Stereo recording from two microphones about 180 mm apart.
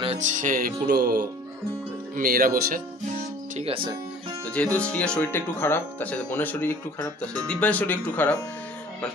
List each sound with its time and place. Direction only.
0.0 s music: 40° right (ahead or behind); by 1.2 s 60° right (ahead or behind)
2.1 s speech: 50° right (ahead or behind)
3.6 s speech: 30° right (ahead or behind)
4.7 s speech: 5° left (ahead or behind)